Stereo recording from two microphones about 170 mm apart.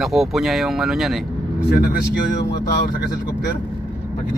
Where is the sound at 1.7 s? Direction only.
65° left (ahead or behind).